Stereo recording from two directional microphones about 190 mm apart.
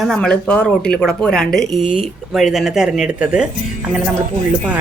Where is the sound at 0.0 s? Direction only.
Centre (ahead or behind).